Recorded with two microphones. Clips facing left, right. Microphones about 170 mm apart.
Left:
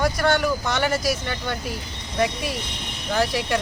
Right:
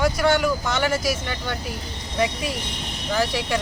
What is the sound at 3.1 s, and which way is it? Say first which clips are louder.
Speech: left 1 dB; 5° right (ahead or behind).